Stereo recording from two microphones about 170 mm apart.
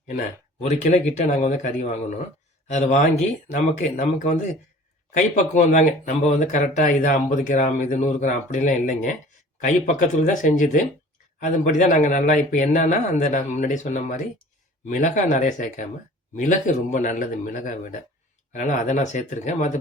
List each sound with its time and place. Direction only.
0.6 s speech: 45° left (ahead or behind)